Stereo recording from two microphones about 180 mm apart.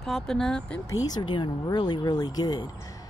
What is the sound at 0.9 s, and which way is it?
Speech, 20° left (ahead or behind).